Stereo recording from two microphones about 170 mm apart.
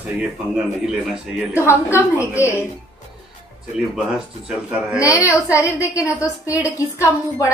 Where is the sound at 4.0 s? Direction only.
5° right (ahead or behind).